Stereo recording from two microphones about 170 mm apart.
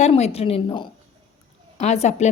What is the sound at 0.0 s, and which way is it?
A woman's voice, 40° left (ahead or behind).